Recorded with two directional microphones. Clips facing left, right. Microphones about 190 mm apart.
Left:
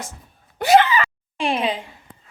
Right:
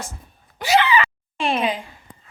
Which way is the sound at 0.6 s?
50° left (ahead or behind).